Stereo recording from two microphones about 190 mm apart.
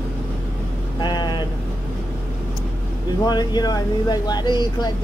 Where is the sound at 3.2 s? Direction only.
20° left (ahead or behind).